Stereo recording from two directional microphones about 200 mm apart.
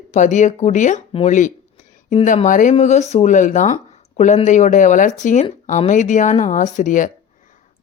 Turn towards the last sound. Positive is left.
turn(degrees=40)  # may be behind; listen again after turning